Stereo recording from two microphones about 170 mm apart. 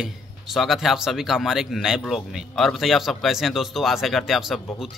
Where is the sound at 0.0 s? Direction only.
Centre (ahead or behind).